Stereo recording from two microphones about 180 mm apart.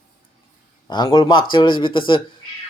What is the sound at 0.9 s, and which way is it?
Speech, 25° left (ahead or behind).